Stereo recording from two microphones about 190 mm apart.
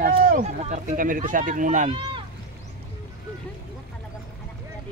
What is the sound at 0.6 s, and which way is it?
Speech, 35° right (ahead or behind).